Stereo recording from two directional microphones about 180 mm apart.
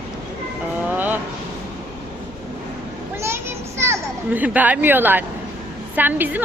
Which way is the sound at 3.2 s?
15° right (ahead or behind).